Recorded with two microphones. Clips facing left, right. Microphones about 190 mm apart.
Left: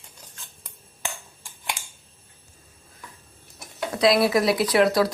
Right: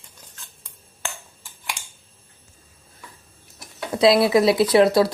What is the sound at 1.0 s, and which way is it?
Finger snapping, 20° left (ahead or behind).